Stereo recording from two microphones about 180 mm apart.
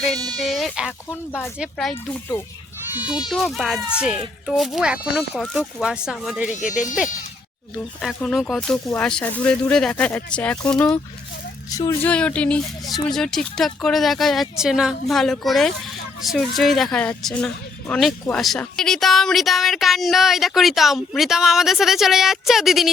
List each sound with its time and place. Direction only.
0.3 s a woman's voice: centre (ahead or behind)
3.2 s a woman's voice: centre (ahead or behind)
6.5 s speech: 45° left (ahead or behind)
8.0 s a woman's voice: centre (ahead or behind)
12.0 s speech: 5° left (ahead or behind)
12.8 s speech: 20° left (ahead or behind)
13.1 s a woman's voice: 5° left (ahead or behind)